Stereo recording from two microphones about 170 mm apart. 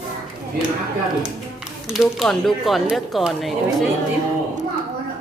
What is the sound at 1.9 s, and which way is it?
Speech, centre (ahead or behind).